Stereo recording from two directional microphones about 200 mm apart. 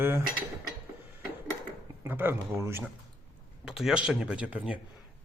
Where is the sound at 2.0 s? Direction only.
10° right (ahead or behind).